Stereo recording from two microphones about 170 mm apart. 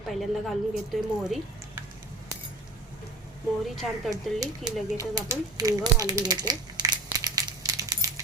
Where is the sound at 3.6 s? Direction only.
Centre (ahead or behind).